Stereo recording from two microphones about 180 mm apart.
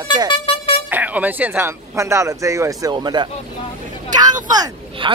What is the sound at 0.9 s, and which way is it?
Speech, 10° right (ahead or behind).